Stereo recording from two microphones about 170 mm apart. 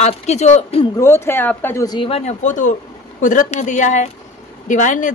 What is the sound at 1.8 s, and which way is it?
Speech, 30° left (ahead or behind).